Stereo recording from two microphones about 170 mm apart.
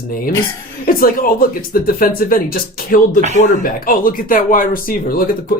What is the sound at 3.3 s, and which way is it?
Speech, 45° left (ahead or behind).